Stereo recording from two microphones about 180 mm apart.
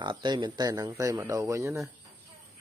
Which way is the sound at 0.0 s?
25° right (ahead or behind).